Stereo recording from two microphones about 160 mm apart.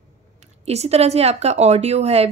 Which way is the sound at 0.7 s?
40° right (ahead or behind).